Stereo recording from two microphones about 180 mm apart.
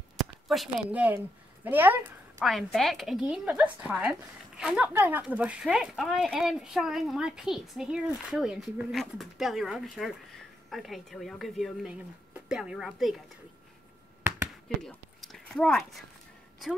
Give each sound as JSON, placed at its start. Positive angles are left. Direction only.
{"t": 0.2, "sound": "a woman's voice", "side_deg": 0}
{"t": 2.4, "sound": "speech", "side_deg": 0}
{"t": 14.8, "sound": "a sound", "side_deg": 0}